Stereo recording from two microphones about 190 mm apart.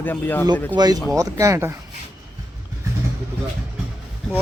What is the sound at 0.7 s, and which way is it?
Speech, 20° right (ahead or behind).